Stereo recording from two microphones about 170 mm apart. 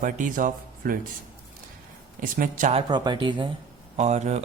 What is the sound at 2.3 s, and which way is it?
Speech, 50° right (ahead or behind).